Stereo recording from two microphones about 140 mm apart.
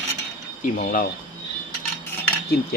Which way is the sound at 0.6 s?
90° left.